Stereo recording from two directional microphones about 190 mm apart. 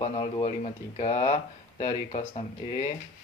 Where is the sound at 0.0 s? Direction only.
25° left (ahead or behind).